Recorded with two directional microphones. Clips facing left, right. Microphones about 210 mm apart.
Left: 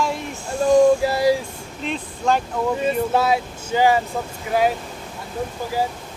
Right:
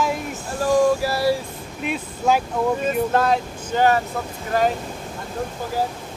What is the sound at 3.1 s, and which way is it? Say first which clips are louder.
Speech: even; 10° left (ahead or behind).